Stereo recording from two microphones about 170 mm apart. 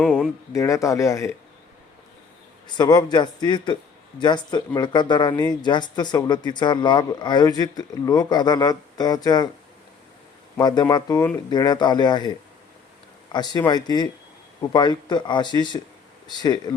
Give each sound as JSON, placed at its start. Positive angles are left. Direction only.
{"t": 0.0, "sound": "speech", "side_deg": 5}
{"t": 0.5, "sound": "speech", "side_deg": 20}
{"t": 2.7, "sound": "speech", "side_deg": 25}
{"t": 10.6, "sound": "speech", "side_deg": 25}
{"t": 13.3, "sound": "speech", "side_deg": 25}